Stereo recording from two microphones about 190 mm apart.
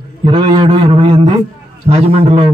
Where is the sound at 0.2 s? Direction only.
30° right (ahead or behind).